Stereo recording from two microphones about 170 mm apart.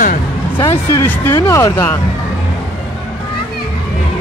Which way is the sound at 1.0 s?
15° left (ahead or behind).